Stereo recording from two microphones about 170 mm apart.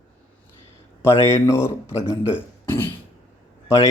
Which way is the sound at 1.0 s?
15° left (ahead or behind).